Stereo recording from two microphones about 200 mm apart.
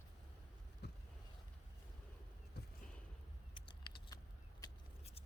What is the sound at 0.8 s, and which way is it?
Vehicle, 55° left (ahead or behind).